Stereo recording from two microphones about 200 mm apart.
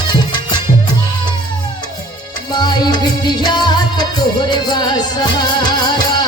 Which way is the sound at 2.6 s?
20° left (ahead or behind).